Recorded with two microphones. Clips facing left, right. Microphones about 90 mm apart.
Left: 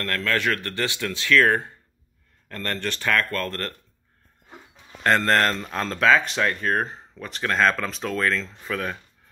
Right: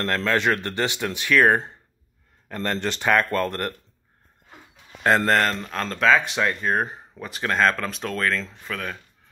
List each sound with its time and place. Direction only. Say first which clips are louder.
0.0 s speech: right 3 dB; 25° right (ahead or behind)
5.0 s speech: even; 5° right (ahead or behind)